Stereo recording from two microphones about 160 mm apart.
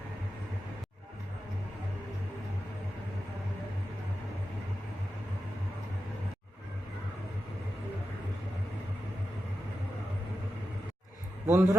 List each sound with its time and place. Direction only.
11.4 s a man's voice: 15° right (ahead or behind)